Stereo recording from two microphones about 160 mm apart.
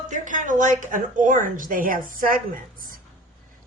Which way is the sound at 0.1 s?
55° right (ahead or behind).